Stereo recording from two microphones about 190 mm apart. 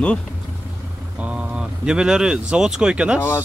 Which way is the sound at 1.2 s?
5° right (ahead or behind).